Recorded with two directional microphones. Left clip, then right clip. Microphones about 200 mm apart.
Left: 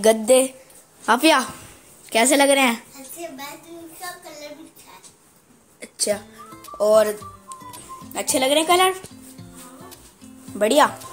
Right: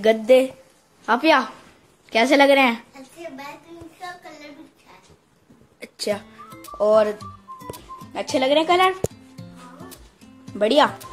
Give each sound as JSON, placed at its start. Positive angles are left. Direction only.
{"t": 0.0, "sound": "a woman's voice", "side_deg": 15}
{"t": 2.0, "sound": "a woman's voice", "side_deg": 10}
{"t": 5.8, "sound": "music", "side_deg": 0}
{"t": 7.7, "sound": "speech", "side_deg": 0}
{"t": 10.5, "sound": "speech", "side_deg": 0}